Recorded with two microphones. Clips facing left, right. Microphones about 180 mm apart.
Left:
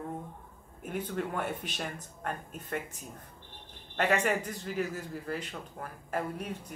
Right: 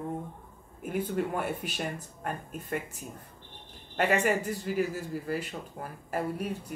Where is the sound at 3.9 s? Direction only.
10° right (ahead or behind).